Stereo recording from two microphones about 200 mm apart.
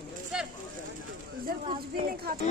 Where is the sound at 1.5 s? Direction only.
50° right (ahead or behind).